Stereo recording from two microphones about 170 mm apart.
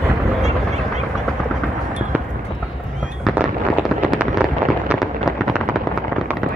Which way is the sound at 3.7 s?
5° right (ahead or behind).